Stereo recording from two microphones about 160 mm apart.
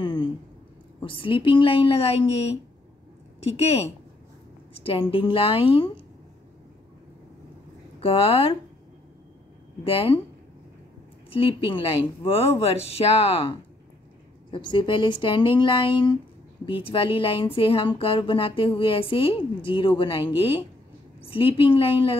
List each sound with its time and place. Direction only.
0.0 s a sound: 30° left (ahead or behind)
1.0 s speech: 35° left (ahead or behind)
8.0 s speech: 35° left (ahead or behind)
9.8 s speech: 35° left (ahead or behind)
11.2 s speech: 35° left (ahead or behind)